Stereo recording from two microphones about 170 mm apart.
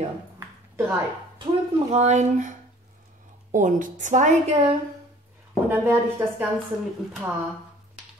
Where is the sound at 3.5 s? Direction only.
50° right (ahead or behind).